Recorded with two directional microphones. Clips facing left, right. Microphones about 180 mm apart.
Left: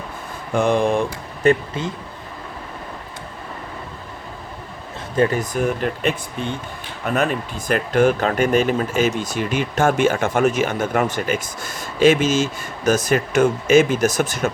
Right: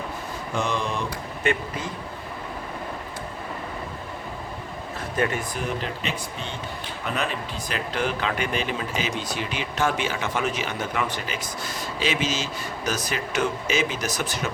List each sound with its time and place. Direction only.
0.5 s speech: 55° left (ahead or behind)
1.4 s speech: 40° left (ahead or behind)
5.1 s speech: 35° left (ahead or behind)